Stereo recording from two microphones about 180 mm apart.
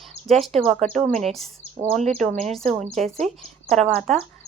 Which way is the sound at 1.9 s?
40° right (ahead or behind).